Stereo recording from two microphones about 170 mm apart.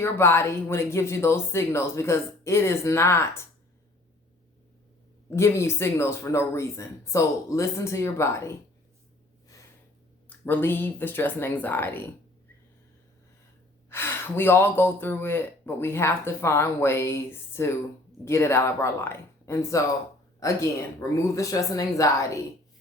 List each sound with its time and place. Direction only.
0.0 s speech: 15° left (ahead or behind)
5.3 s speech: 15° left (ahead or behind)
10.2 s speech: 10° left (ahead or behind)
13.9 s speech: 15° left (ahead or behind)